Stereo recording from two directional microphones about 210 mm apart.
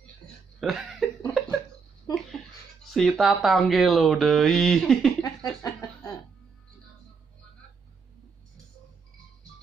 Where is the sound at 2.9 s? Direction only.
Centre (ahead or behind).